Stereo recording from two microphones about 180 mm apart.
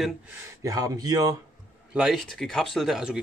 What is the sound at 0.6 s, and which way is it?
Speech, 20° right (ahead or behind).